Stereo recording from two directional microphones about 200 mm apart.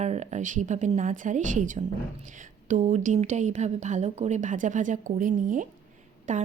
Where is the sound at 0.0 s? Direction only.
35° right (ahead or behind).